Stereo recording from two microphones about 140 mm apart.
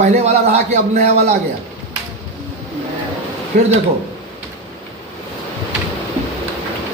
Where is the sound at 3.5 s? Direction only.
75° right (ahead or behind).